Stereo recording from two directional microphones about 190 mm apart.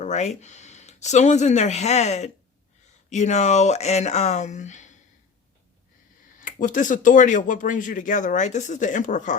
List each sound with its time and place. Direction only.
0.0 s speech: 35° left (ahead or behind)
6.4 s speech: 45° left (ahead or behind)